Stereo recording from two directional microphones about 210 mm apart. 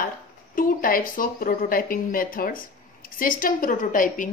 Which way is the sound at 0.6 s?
40° left (ahead or behind).